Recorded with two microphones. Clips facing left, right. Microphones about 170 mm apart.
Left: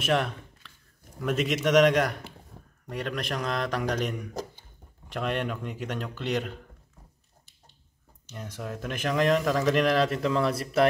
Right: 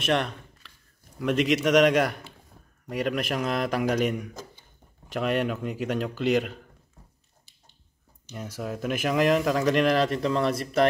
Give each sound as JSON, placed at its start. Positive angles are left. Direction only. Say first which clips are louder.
{"t": 0.0, "sound": "a man's voice", "louder": "right 1 dB", "side_deg": 5}
{"t": 5.1, "sound": "a man's voice", "louder": "right 4 dB", "side_deg": -10}
{"t": 5.9, "sound": "speech", "louder": "right 6 dB", "side_deg": -90}
{"t": 8.3, "sound": "speech", "louder": "right 3 dB", "side_deg": -10}